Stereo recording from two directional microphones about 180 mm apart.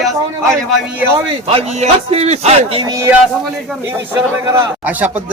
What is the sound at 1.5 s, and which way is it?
Speech, 35° right (ahead or behind).